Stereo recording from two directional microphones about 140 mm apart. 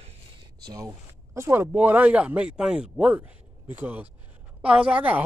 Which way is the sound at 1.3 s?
20° right (ahead or behind).